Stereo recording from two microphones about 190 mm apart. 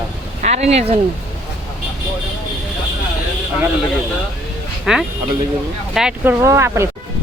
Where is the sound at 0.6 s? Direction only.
35° right (ahead or behind).